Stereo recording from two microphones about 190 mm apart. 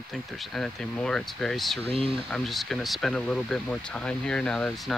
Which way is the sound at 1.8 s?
30° right (ahead or behind).